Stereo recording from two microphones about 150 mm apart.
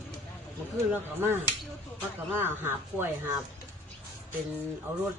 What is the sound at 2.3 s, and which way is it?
Speech, 15° right (ahead or behind).